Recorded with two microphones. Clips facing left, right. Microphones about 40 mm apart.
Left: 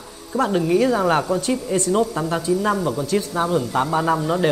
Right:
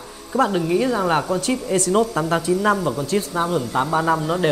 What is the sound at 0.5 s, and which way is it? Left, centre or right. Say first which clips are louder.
Speech: left 2 dB; centre.